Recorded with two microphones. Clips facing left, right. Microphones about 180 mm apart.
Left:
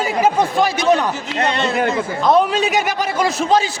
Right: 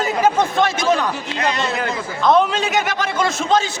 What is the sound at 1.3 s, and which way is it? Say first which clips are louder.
Speech: left 3 dB; 30° left (ahead or behind).